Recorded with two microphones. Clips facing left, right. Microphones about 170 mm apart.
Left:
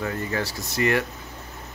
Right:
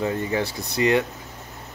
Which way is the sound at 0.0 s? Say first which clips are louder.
Right 3 dB; 20° right (ahead or behind).